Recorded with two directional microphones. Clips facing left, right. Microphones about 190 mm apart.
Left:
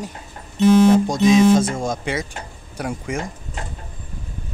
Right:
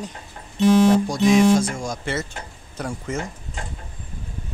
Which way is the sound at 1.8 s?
15° left (ahead or behind).